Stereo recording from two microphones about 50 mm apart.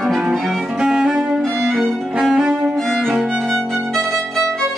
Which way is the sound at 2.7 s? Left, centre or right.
Centre.